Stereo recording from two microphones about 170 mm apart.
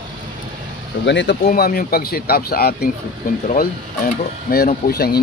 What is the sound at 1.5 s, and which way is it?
Speech, 60° left (ahead or behind).